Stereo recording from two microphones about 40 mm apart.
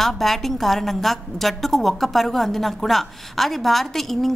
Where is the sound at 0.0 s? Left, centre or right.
Centre.